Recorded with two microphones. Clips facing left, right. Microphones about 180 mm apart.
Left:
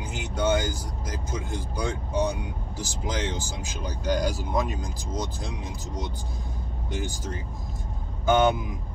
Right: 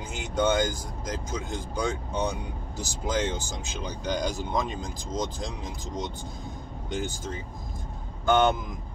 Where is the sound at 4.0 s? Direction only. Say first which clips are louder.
Left 3 dB; 5° left (ahead or behind).